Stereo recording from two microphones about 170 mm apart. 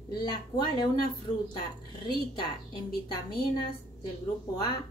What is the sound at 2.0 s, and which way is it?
Speech, 25° left (ahead or behind).